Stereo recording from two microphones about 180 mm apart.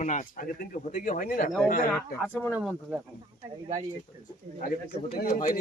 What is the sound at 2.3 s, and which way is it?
Speech, 10° left (ahead or behind).